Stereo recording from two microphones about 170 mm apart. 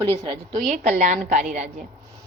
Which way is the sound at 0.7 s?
45° right (ahead or behind).